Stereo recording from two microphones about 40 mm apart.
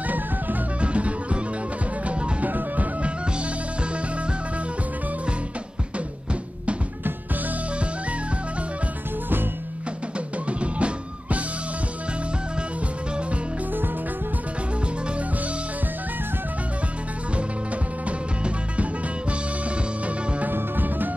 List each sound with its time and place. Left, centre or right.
0.7 s music: right
2.0 s music: right
10.4 s drum: right
20.4 s music: right